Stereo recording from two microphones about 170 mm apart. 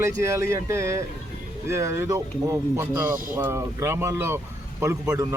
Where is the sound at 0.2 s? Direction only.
15° right (ahead or behind).